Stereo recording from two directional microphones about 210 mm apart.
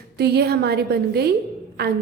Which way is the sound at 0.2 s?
50° right (ahead or behind).